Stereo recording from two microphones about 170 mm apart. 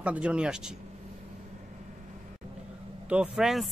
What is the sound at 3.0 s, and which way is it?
Speech, 5° right (ahead or behind).